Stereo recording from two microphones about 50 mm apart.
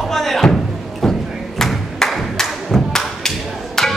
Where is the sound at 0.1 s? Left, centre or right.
Centre.